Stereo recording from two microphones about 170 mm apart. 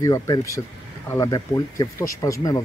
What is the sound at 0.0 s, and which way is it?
Speech, 20° left (ahead or behind).